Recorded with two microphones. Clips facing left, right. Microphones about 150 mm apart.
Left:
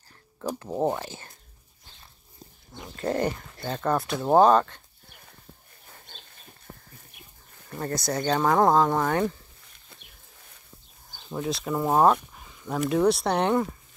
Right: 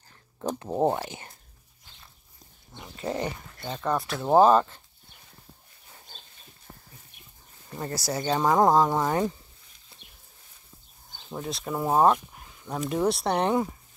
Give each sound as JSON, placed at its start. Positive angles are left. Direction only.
{"t": 0.6, "sound": "speech", "side_deg": -20}
{"t": 2.8, "sound": "speech", "side_deg": -5}
{"t": 8.0, "sound": "speech", "side_deg": -5}
{"t": 11.2, "sound": "speech", "side_deg": 0}